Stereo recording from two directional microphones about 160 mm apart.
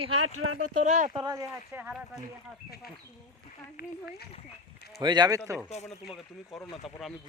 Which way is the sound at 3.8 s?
80° left.